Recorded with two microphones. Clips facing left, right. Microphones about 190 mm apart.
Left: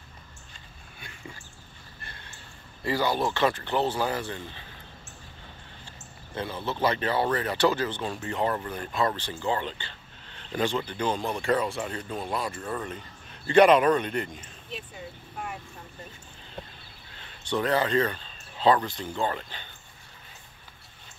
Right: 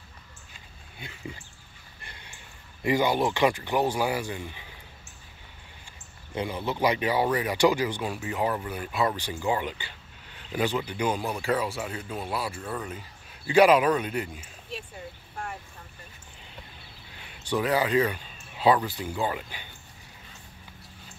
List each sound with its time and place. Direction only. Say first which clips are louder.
0.9 s a sound: right 5 dB; 20° right (ahead or behind)
2.0 s speech: even; 15° right (ahead or behind)
6.3 s speech: right 2 dB; 15° right (ahead or behind)
17.2 s speech: even; 10° right (ahead or behind)